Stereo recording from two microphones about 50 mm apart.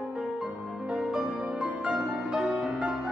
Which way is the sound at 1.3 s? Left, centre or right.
Right.